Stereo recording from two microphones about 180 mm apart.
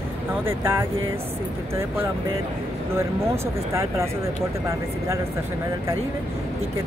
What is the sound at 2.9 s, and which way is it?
Speech, 15° right (ahead or behind).